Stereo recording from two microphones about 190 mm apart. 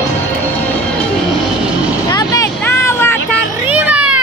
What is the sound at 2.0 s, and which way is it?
Vehicle, 20° left (ahead or behind).